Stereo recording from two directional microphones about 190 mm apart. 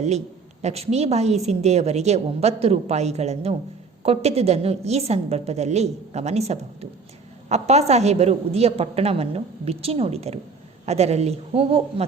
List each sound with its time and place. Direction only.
0.6 s a woman's voice: 35° right (ahead or behind)